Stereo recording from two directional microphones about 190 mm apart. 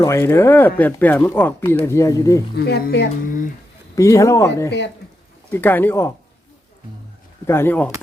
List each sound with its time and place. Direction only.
0.0 s speech: 15° left (ahead or behind)
2.6 s speech: 55° left (ahead or behind)
3.2 s speech: 45° left (ahead or behind)
3.9 s speech: 15° left (ahead or behind)
7.4 s speech: 15° left (ahead or behind)